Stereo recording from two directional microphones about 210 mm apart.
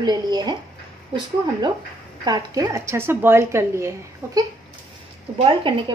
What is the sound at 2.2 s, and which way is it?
A woman's voice, 20° right (ahead or behind).